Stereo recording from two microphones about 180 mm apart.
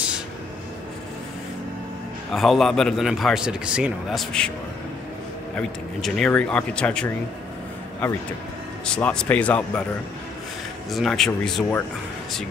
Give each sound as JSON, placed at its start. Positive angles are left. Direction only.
{"t": 2.3, "sound": "a man's voice", "side_deg": 0}
{"t": 5.6, "sound": "a man's voice", "side_deg": 0}
{"t": 8.8, "sound": "a man's voice", "side_deg": 5}
{"t": 10.9, "sound": "a man's voice", "side_deg": 0}